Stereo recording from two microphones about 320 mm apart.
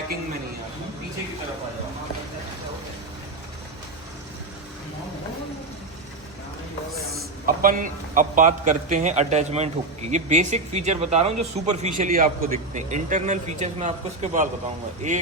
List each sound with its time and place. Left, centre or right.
7.4 s a man's voice: right